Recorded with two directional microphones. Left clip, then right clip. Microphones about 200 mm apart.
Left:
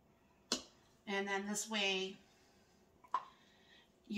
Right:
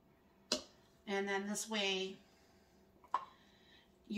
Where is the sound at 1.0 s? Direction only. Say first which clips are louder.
Right 1 dB; 10° left (ahead or behind).